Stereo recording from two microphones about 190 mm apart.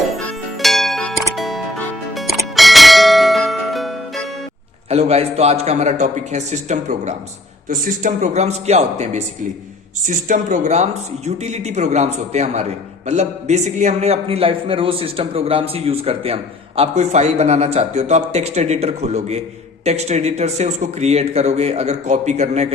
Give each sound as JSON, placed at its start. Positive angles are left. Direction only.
{"t": 0.6, "sound": "music", "side_deg": 0}
{"t": 1.4, "sound": "church bell", "side_deg": 0}
{"t": 4.9, "sound": "a man's voice", "side_deg": -35}